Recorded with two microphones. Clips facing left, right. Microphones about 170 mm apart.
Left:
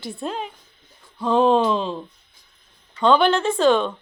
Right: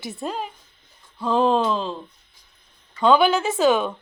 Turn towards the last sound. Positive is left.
turn(degrees=-5)  # may be behind; listen again after turning